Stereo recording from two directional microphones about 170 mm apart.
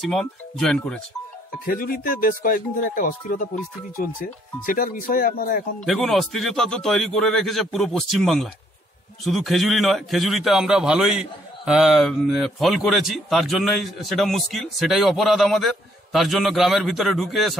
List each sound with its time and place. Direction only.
0.0 s a man's voice: centre (ahead or behind)
1.7 s speech: 55° left (ahead or behind)
5.9 s a man's voice: centre (ahead or behind)